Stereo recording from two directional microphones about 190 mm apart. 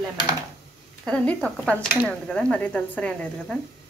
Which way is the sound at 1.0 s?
5° left (ahead or behind).